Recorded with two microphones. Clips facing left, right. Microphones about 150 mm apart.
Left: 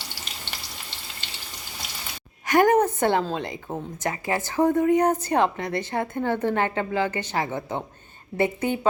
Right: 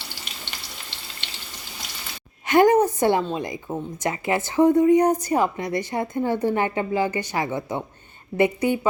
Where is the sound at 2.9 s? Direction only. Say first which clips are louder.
Right 2 dB; 55° left (ahead or behind).